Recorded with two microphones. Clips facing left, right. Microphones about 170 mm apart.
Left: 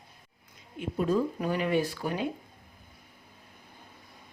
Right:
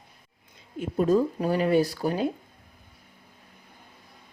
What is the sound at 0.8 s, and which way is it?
Speech, 40° right (ahead or behind).